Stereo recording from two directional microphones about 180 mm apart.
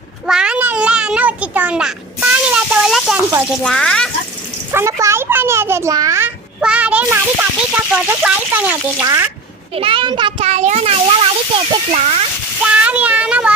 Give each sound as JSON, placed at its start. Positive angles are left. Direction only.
{"t": 0.3, "sound": "a sound", "side_deg": -5}
{"t": 3.6, "sound": "speech", "side_deg": 5}
{"t": 4.7, "sound": "a child's voice", "side_deg": -15}
{"t": 9.7, "sound": "a child's voice", "side_deg": -30}
{"t": 12.6, "sound": "speech", "side_deg": -5}